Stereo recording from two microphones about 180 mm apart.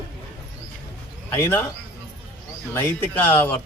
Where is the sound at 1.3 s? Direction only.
15° left (ahead or behind).